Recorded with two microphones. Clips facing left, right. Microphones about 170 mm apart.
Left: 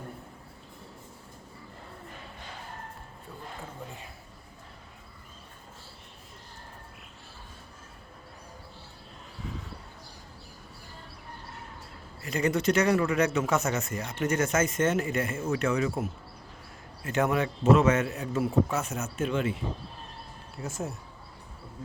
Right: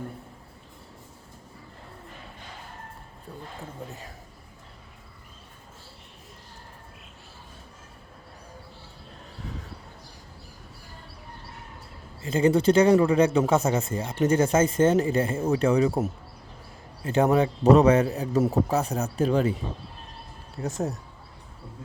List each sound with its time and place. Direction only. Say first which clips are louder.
12.2 s speech: right 6 dB; 30° right (ahead or behind)
20.6 s speech: right 6 dB; 40° right (ahead or behind)